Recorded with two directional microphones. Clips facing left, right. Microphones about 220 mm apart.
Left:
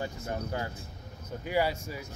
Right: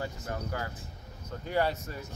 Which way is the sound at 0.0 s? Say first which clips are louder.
Left 1 dB; 25° left (ahead or behind).